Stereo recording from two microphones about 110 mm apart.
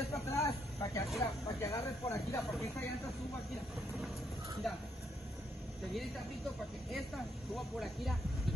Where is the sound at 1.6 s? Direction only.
25° left (ahead or behind).